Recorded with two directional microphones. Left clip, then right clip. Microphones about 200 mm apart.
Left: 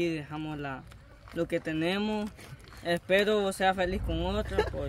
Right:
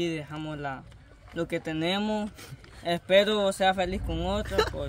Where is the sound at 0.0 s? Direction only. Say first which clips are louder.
Even; 10° right (ahead or behind).